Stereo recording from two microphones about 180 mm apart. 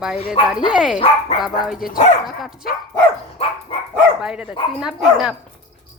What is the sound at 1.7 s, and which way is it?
Speech, 50° left (ahead or behind).